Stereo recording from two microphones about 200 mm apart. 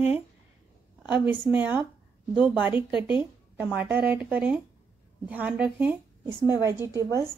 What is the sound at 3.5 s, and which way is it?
A woman's voice, 10° right (ahead or behind).